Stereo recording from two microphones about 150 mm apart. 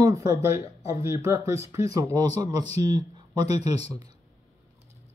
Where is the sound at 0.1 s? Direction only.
20° right (ahead or behind).